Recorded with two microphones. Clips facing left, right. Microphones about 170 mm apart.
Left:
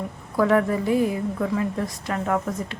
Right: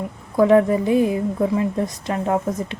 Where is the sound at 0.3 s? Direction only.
20° right (ahead or behind).